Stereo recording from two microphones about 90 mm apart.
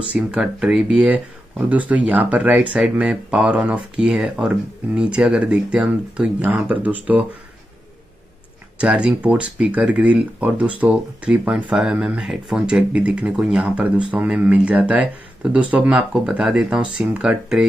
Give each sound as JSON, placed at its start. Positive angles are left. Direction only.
{"t": 0.1, "sound": "speech", "side_deg": -10}
{"t": 8.7, "sound": "speech", "side_deg": -10}